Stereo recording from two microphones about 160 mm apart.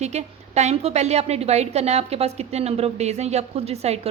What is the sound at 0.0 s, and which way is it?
A woman's voice, 45° right (ahead or behind).